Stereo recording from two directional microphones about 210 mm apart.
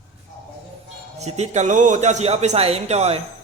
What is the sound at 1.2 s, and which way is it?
A man's voice, 30° right (ahead or behind).